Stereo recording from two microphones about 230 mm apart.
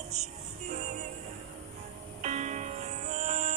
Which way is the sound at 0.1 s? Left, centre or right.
Right.